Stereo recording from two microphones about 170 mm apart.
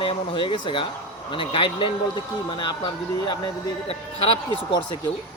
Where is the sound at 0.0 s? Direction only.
30° left (ahead or behind).